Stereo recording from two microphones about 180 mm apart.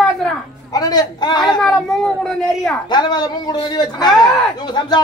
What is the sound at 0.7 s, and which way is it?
Speech, 20° left (ahead or behind).